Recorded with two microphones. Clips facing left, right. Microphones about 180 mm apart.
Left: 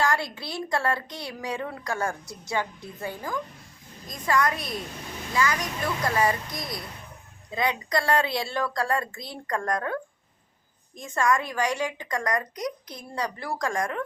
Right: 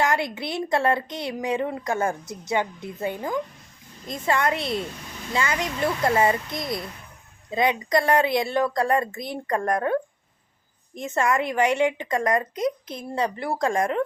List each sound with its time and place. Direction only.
0.0 s speech: 20° right (ahead or behind)
11.0 s speech: 25° right (ahead or behind)